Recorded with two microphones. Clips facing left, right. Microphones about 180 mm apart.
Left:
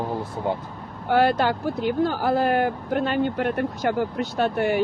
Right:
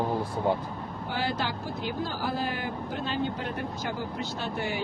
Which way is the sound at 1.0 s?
65° left (ahead or behind).